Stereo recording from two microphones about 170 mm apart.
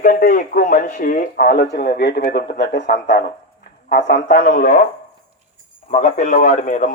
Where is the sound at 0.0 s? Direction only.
55° left (ahead or behind).